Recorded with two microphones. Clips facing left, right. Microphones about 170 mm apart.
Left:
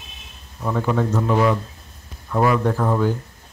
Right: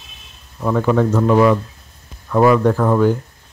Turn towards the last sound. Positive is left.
turn(degrees=-90)